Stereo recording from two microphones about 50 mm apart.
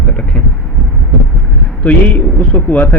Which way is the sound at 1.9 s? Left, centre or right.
Left.